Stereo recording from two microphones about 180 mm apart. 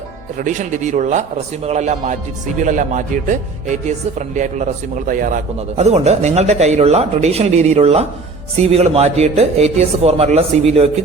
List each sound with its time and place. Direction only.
0.3 s a man's voice: 45° right (ahead or behind)